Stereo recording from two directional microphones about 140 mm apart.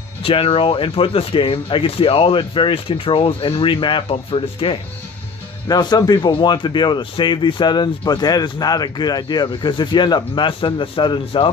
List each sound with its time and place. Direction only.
0.2 s speech: 40° left (ahead or behind)
5.7 s speech: 30° left (ahead or behind)